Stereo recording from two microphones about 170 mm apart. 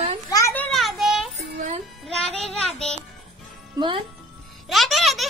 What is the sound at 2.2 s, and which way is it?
Child singing, 40° left (ahead or behind).